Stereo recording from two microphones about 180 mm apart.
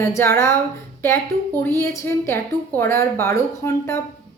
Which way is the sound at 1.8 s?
15° left (ahead or behind).